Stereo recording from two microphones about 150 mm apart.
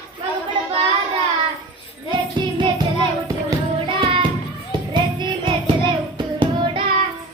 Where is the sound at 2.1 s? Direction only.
30° right (ahead or behind).